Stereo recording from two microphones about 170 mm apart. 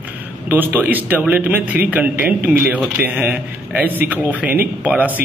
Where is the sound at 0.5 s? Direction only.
10° right (ahead or behind).